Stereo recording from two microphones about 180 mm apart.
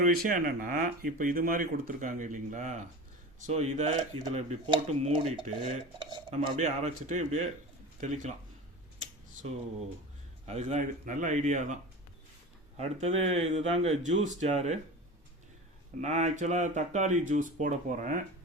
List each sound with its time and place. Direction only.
0.0 s speech: 45° right (ahead or behind)
10.4 s speech: 35° right (ahead or behind)
16.0 s speech: 40° right (ahead or behind)